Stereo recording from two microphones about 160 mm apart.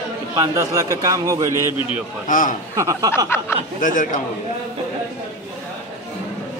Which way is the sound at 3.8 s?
55° left (ahead or behind).